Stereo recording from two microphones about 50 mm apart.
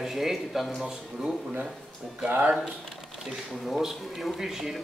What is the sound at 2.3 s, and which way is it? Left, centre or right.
Speech, right.